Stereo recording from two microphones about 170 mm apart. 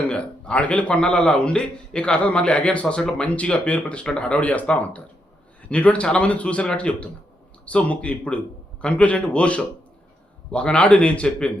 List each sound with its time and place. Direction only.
0.1 s a man's voice: 5° left (ahead or behind)